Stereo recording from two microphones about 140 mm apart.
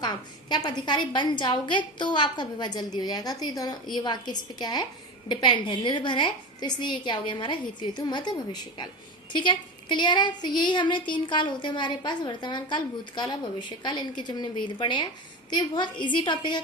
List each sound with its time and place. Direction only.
0.0 s speech: 30° left (ahead or behind)